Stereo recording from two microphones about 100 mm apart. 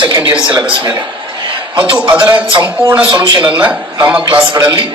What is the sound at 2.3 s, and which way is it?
Speech, 50° right (ahead or behind).